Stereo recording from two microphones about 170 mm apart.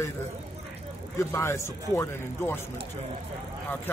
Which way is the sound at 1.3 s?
15° left (ahead or behind).